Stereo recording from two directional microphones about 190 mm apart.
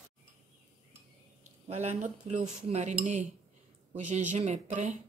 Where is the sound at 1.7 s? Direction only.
35° right (ahead or behind).